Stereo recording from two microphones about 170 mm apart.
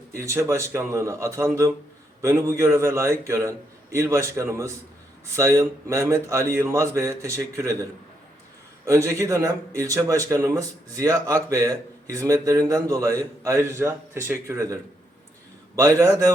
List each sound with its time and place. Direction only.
0.1 s speech: 15° right (ahead or behind)
8.9 s a man's voice: 15° right (ahead or behind)